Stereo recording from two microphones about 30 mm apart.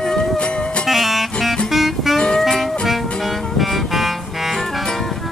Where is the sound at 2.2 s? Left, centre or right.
Left.